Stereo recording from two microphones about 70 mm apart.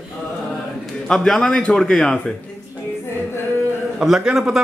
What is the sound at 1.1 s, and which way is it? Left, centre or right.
A woman's voice, centre.